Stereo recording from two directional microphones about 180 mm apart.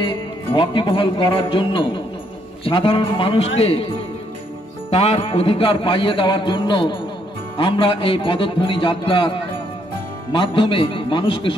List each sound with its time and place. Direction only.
0.0 s jingle bell: 30° left (ahead or behind)
2.6 s a man's voice: 30° left (ahead or behind)
4.9 s a man's voice: 35° left (ahead or behind)
10.3 s a man's voice: 30° left (ahead or behind)